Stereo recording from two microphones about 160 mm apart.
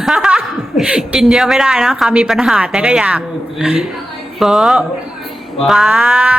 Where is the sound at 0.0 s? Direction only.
5° right (ahead or behind).